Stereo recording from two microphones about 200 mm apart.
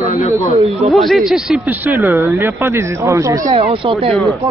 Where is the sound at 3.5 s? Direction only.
30° right (ahead or behind).